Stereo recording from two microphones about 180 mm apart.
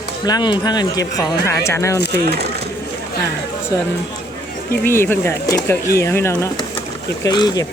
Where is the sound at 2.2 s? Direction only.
65° right (ahead or behind).